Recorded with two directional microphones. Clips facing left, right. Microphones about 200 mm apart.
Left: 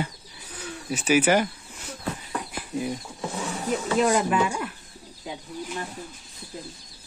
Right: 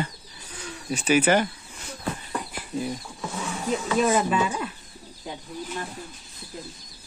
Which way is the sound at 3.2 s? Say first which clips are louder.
Even; 35° left (ahead or behind).